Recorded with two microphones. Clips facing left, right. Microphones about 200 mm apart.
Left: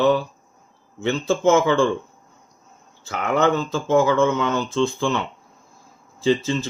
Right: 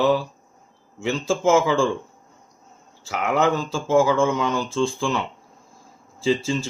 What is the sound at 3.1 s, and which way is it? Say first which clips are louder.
Speech: left 1 dB; 5° right (ahead or behind).